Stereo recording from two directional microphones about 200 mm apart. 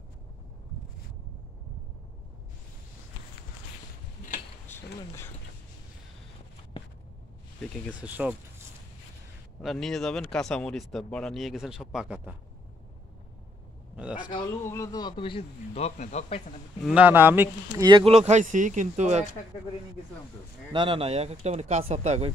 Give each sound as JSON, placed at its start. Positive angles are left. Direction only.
{"t": 4.7, "sound": "a sound", "side_deg": 10}
{"t": 8.0, "sound": "speech", "side_deg": -5}
{"t": 9.6, "sound": "speech", "side_deg": 0}
{"t": 14.7, "sound": "speech", "side_deg": 15}
{"t": 16.8, "sound": "speech", "side_deg": -5}
{"t": 17.8, "sound": "speech", "side_deg": -25}
{"t": 20.7, "sound": "speech", "side_deg": -25}